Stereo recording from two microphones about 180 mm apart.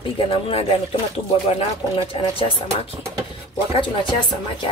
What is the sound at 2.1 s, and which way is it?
Speech, 30° left (ahead or behind).